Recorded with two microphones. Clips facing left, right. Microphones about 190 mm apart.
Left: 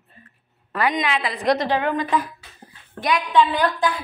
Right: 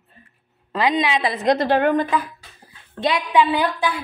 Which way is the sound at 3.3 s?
10° right (ahead or behind).